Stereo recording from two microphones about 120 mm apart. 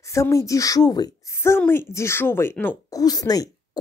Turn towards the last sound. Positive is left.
turn(degrees=30)  # may be behind; listen again after turning